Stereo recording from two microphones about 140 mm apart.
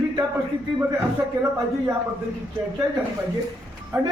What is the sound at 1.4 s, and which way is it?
Speech, 25° right (ahead or behind).